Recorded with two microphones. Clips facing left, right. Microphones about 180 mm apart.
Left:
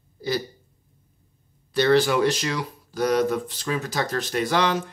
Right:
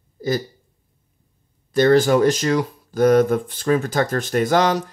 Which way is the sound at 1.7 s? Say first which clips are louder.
Right 5 dB; 45° right (ahead or behind).